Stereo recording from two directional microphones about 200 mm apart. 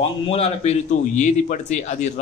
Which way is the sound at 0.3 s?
30° left (ahead or behind).